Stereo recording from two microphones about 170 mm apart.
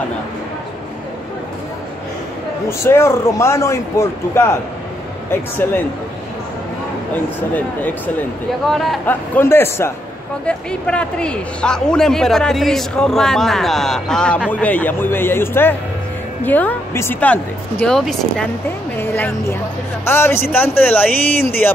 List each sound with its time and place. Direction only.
2.8 s a woman's voice: 15° left (ahead or behind)
8.6 s a woman's voice: centre (ahead or behind)
18.9 s music: 10° left (ahead or behind)
20.1 s a woman's voice: 15° left (ahead or behind)